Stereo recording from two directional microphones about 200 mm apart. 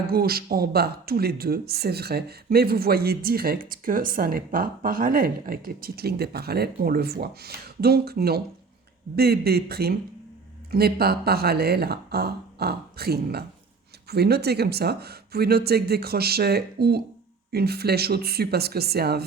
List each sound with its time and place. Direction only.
0.1 s speech: 50° right (ahead or behind)